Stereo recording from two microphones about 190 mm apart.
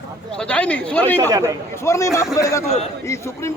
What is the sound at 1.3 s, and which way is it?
Speech, 20° right (ahead or behind).